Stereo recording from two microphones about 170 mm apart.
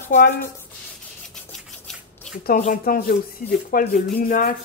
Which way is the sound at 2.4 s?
55° left (ahead or behind).